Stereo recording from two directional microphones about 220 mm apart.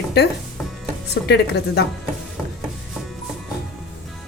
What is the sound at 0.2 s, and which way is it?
A woman's voice, 45° left (ahead or behind).